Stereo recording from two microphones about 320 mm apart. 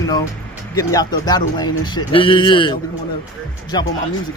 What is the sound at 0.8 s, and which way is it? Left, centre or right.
Speech, centre.